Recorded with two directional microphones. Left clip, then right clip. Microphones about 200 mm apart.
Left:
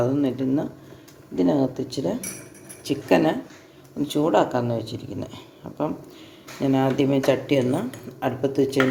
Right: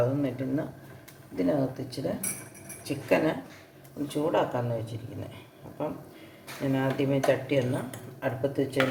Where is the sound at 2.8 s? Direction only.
40° left (ahead or behind).